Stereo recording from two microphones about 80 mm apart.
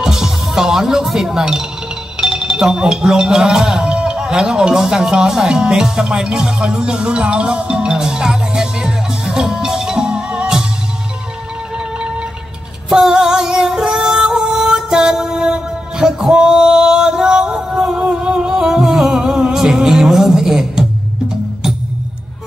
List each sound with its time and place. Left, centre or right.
0.0 s speech: centre
12.9 s music: centre